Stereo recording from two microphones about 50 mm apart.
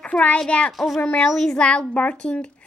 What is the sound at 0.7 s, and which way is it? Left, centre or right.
Speech, centre.